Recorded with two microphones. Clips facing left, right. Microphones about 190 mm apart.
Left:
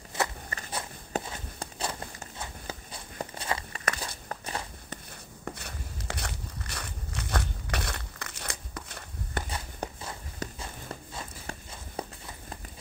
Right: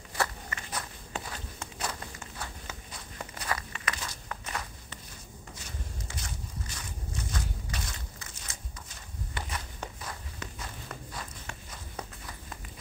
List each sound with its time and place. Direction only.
0.1 s walk: 20° left (ahead or behind)
2.6 s a sound: 30° left (ahead or behind)
4.3 s walk: 30° left (ahead or behind)
5.4 s walk: 60° left (ahead or behind)
9.5 s walk: 35° left (ahead or behind)